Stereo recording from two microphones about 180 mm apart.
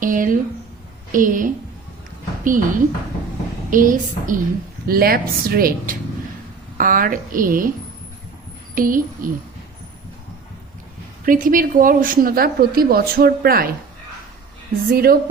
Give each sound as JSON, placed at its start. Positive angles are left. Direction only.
{"t": 0.0, "sound": "a woman's voice", "side_deg": -50}
{"t": 8.7, "sound": "a woman's voice", "side_deg": -50}
{"t": 11.3, "sound": "a woman's voice", "side_deg": -50}
{"t": 14.8, "sound": "speech", "side_deg": -55}